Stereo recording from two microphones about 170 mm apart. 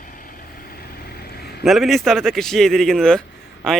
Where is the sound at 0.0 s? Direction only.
55° left (ahead or behind).